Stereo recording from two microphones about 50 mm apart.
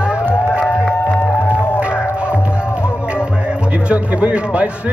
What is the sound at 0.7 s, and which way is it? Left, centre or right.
Music, left.